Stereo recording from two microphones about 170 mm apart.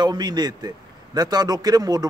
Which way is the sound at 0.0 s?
25° right (ahead or behind).